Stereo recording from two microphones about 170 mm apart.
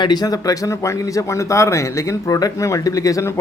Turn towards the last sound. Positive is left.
turn(degrees=20)  # may be behind; listen again after turning